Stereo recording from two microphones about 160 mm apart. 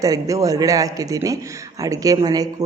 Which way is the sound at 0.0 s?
20° right (ahead or behind).